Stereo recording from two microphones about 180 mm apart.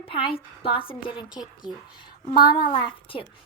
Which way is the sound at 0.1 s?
30° left (ahead or behind).